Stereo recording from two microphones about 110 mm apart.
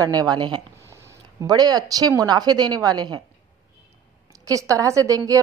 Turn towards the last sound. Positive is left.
turn(degrees=-30)  # may be behind; listen again after turning